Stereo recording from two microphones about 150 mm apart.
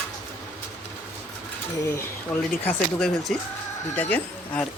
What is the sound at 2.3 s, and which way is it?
Speech, centre (ahead or behind).